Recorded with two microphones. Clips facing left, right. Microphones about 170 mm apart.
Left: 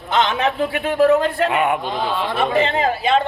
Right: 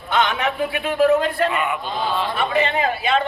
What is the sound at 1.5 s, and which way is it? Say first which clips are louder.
Speech: left 5 dB; 60° left (ahead or behind).